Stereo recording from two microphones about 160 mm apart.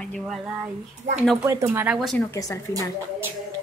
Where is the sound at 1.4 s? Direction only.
15° right (ahead or behind).